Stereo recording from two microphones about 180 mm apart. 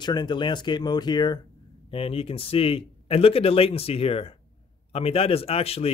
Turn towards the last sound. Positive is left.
turn(degrees=35)  # may be behind; listen again after turning